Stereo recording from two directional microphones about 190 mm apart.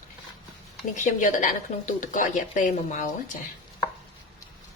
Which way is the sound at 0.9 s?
40° left (ahead or behind).